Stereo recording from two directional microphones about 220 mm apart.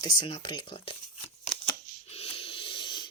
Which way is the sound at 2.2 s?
25° left (ahead or behind).